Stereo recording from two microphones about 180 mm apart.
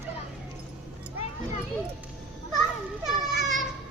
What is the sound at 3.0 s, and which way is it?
Children playing, centre (ahead or behind).